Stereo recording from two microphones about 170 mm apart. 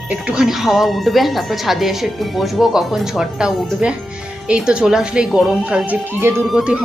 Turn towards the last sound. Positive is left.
turn(degrees=-5)  # may be behind; listen again after turning